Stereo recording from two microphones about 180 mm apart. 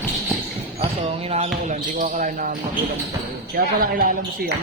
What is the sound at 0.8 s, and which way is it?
Speech, 35° right (ahead or behind).